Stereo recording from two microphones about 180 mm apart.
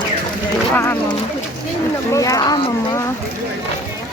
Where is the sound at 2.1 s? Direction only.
20° left (ahead or behind).